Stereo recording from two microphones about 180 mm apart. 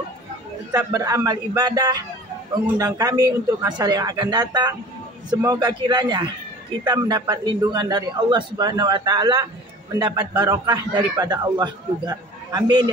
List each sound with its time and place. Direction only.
0.7 s a man's voice: 20° right (ahead or behind)